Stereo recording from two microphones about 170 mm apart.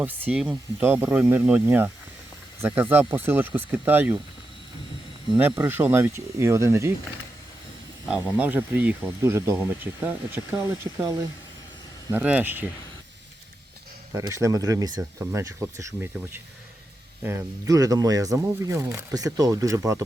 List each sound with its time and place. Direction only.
0.0 s speech: 10° right (ahead or behind)
5.4 s speech: 10° right (ahead or behind)
8.4 s speech: 10° right (ahead or behind)
14.1 s speech: 20° right (ahead or behind)